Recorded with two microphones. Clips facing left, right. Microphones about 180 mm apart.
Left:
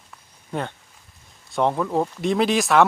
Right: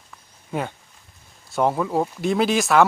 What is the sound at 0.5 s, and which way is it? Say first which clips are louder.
Speech: right 1 dB; 5° right (ahead or behind).